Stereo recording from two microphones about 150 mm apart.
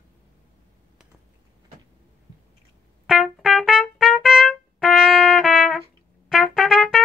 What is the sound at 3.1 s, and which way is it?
Trumpet, 5° right (ahead or behind).